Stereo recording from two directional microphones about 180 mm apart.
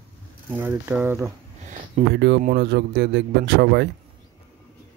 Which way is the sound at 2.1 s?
70° right (ahead or behind).